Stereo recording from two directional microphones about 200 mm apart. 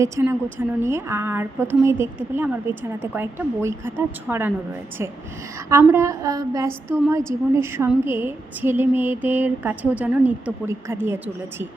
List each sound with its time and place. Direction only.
0.0 s a woman's voice: 15° right (ahead or behind)
5.9 s a woman's voice: 15° right (ahead or behind)